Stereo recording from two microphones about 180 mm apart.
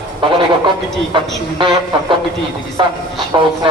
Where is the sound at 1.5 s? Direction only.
25° right (ahead or behind).